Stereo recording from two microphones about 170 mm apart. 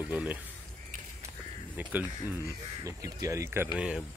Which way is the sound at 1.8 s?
10° right (ahead or behind).